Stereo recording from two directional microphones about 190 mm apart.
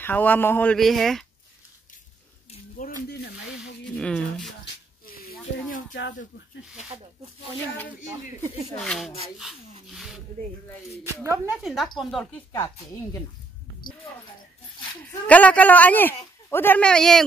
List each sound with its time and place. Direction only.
0.0 s a man's voice: 10° left (ahead or behind)
2.8 s a sound: 60° left (ahead or behind)
3.8 s speech: 5° left (ahead or behind)
5.0 s snake: 50° left (ahead or behind)
8.7 s a woman's voice: centre (ahead or behind)
11.2 s a woman's voice: 10° right (ahead or behind)
12.5 s a man's voice: 15° left (ahead or behind)
15.0 s a man's voice: 10° left (ahead or behind)